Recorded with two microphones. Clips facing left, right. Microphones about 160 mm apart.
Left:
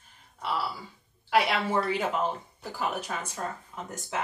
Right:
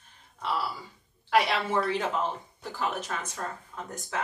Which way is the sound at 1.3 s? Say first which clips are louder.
Even; 10° left (ahead or behind).